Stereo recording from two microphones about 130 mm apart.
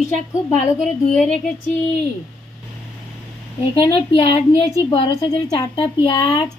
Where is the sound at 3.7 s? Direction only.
45° left (ahead or behind).